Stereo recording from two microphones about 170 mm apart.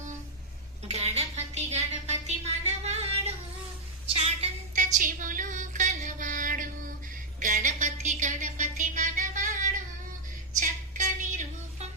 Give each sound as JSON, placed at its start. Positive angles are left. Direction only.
{"t": 0.9, "sound": "music", "side_deg": -40}
{"t": 4.1, "sound": "music", "side_deg": -35}
{"t": 10.6, "sound": "a sound", "side_deg": -45}